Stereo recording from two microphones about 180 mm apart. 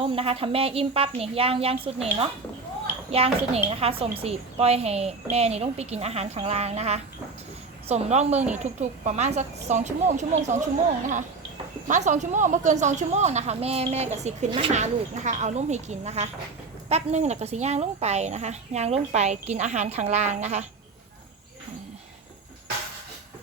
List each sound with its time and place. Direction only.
0.0 s a woman's voice: 30° right (ahead or behind)
11.9 s a woman's voice: 40° right (ahead or behind)